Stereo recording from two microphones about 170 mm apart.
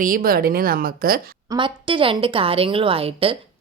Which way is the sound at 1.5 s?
30° right (ahead or behind).